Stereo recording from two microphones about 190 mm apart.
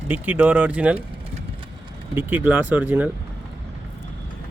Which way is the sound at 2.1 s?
10° right (ahead or behind).